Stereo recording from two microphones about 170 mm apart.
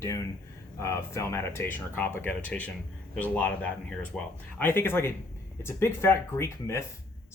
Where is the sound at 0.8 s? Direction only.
15° left (ahead or behind).